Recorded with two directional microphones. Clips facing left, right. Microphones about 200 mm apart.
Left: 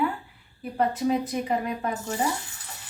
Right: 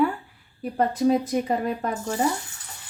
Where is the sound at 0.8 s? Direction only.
40° right (ahead or behind).